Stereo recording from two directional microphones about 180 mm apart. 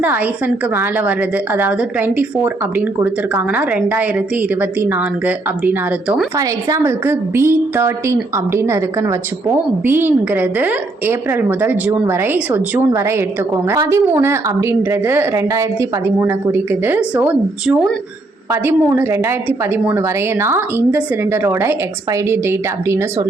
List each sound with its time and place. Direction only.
0.0 s speech: 10° right (ahead or behind)
6.3 s speech: 20° right (ahead or behind)